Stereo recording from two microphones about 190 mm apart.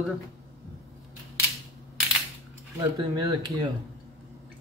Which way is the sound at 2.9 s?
25° right (ahead or behind).